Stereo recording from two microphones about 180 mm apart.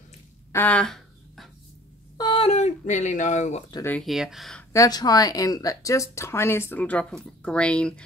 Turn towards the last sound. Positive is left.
turn(degrees=5)  # may be behind; listen again after turning